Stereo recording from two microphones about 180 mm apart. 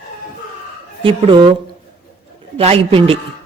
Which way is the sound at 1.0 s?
30° right (ahead or behind).